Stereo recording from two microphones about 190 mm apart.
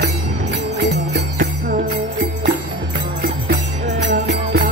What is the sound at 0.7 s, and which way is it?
Music, 65° right (ahead or behind).